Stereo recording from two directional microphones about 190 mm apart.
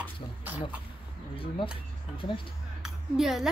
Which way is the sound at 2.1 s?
25° left (ahead or behind).